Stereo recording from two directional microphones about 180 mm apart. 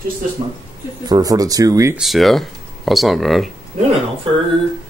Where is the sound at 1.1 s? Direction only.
20° right (ahead or behind).